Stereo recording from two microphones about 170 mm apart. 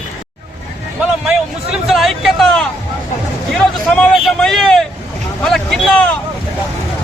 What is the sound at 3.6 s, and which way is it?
Hubbub, 5° left (ahead or behind).